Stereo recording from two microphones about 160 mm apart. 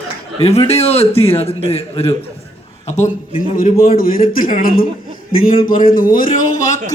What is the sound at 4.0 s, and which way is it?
Speech, 60° left (ahead or behind).